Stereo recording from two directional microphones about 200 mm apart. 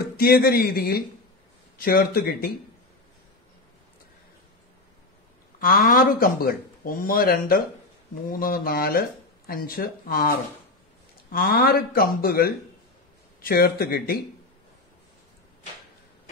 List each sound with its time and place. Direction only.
0.0 s speech: 50° left (ahead or behind)
5.6 s speech: 45° left (ahead or behind)
11.3 s speech: 50° left (ahead or behind)